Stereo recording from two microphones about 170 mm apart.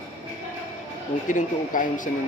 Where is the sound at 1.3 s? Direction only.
50° left (ahead or behind).